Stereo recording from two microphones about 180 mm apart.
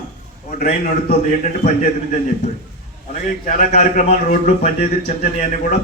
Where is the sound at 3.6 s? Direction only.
45° left (ahead or behind).